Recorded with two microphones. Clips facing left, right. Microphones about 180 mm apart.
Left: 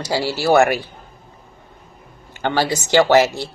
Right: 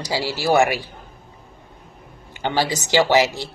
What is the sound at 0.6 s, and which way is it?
Speech, 50° left (ahead or behind).